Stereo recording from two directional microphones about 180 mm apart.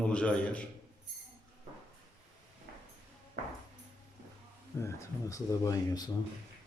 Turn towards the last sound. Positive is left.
turn(degrees=20)  # may be behind; listen again after turning